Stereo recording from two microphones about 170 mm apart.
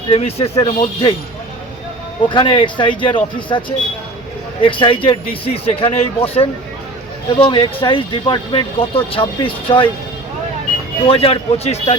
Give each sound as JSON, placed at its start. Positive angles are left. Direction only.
{"t": 0.1, "sound": "speech", "side_deg": 35}
{"t": 2.3, "sound": "speech", "side_deg": 30}
{"t": 11.0, "sound": "speech", "side_deg": 35}